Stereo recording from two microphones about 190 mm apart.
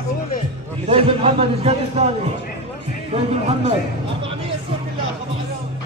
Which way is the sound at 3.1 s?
35° right (ahead or behind).